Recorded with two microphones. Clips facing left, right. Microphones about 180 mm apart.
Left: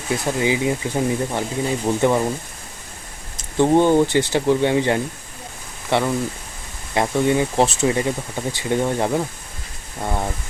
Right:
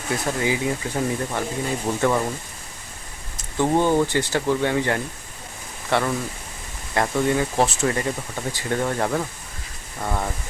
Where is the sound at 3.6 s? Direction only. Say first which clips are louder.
Left 4 dB; 20° left (ahead or behind).